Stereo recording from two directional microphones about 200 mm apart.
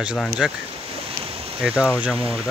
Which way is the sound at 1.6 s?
5° right (ahead or behind).